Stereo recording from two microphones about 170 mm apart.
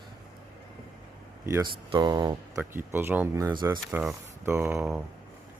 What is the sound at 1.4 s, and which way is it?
Speech, 20° right (ahead or behind).